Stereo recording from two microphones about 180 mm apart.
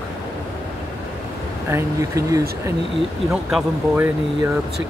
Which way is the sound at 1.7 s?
15° right (ahead or behind).